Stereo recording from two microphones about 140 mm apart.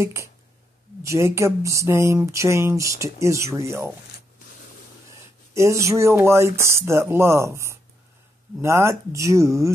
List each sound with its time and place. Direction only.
0.0 s speech: 20° right (ahead or behind)
5.5 s speech: 20° right (ahead or behind)